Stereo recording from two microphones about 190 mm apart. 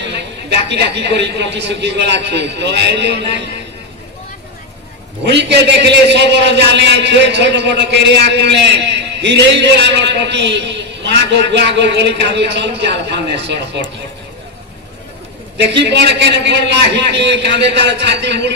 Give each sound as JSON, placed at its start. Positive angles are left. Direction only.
{"t": 0.7, "sound": "a man's voice", "side_deg": -65}
{"t": 5.2, "sound": "a man's voice", "side_deg": -65}
{"t": 15.5, "sound": "a man's voice", "side_deg": -65}